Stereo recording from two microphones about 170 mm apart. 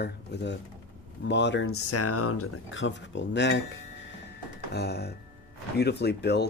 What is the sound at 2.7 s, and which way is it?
Speech, 90° left.